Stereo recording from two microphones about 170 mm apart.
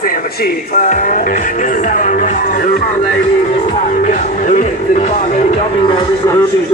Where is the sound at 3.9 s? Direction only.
50° left (ahead or behind).